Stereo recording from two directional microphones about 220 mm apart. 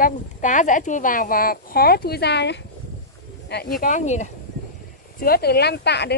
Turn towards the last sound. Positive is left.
turn(degrees=50)  # may be behind; listen again after turning